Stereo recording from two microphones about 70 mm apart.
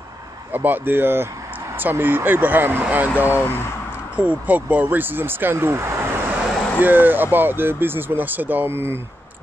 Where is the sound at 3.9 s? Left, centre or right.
Right.